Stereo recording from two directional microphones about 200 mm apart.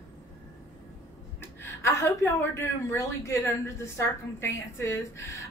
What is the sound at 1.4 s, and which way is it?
A woman's voice, 10° left (ahead or behind).